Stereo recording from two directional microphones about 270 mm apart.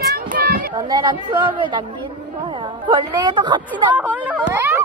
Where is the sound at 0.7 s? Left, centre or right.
Centre.